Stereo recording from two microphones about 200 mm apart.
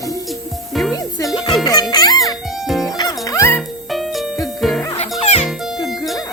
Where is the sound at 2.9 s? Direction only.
20° left (ahead or behind).